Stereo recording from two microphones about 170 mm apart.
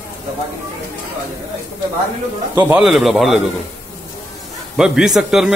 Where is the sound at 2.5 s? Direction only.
10° right (ahead or behind).